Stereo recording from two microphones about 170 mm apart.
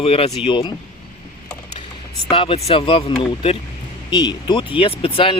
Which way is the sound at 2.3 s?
35° left (ahead or behind).